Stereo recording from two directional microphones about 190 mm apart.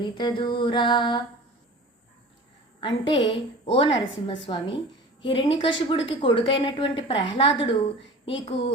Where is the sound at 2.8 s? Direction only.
25° left (ahead or behind).